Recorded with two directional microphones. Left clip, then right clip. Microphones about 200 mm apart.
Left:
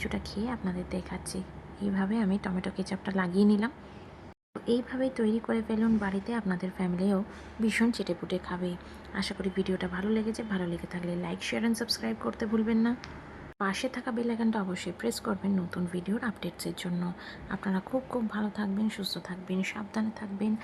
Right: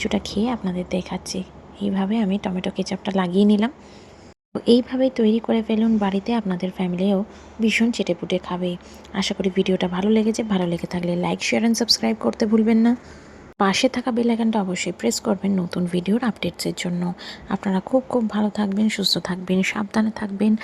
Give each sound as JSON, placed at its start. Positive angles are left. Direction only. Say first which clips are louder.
{"t": 0.1, "sound": "speech", "louder": "right 11 dB", "side_deg": -20}